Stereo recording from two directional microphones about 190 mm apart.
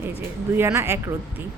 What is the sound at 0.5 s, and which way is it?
Speech, 15° right (ahead or behind).